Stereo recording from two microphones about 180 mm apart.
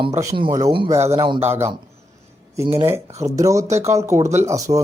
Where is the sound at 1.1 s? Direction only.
30° right (ahead or behind).